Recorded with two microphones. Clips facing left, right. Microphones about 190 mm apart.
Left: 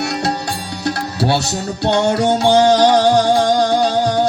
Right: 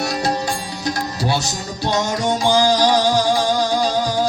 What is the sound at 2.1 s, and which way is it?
Music, 65° left (ahead or behind).